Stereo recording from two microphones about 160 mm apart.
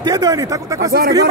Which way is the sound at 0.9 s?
80° right.